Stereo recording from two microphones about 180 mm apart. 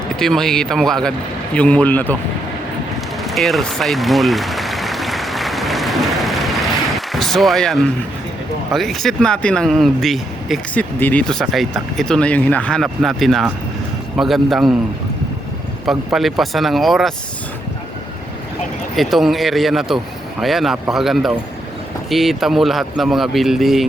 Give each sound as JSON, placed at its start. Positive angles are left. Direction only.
{"t": 0.2, "sound": "speech", "side_deg": 5}
{"t": 3.2, "sound": "applause", "side_deg": 0}
{"t": 7.1, "sound": "speech", "side_deg": 0}
{"t": 15.9, "sound": "speech", "side_deg": 0}
{"t": 18.9, "sound": "speech", "side_deg": 0}